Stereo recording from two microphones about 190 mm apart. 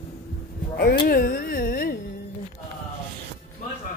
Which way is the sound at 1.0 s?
50° left (ahead or behind).